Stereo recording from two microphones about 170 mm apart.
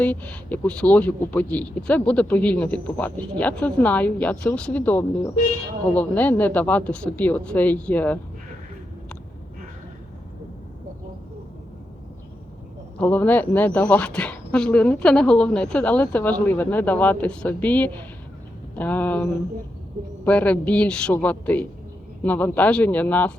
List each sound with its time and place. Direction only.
0.0 s speech: 10° left (ahead or behind)
13.0 s speech: 10° left (ahead or behind)